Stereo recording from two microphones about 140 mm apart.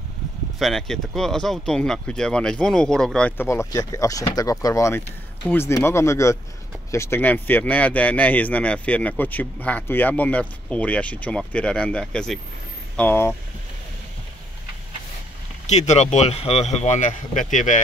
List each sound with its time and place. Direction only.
0.6 s speech: centre (ahead or behind)
15.6 s speech: 55° left (ahead or behind)